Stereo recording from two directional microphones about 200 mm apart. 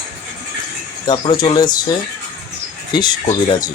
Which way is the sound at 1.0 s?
20° left (ahead or behind).